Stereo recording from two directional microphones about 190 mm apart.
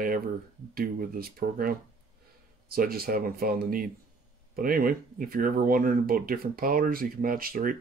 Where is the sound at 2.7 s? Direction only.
50° right (ahead or behind).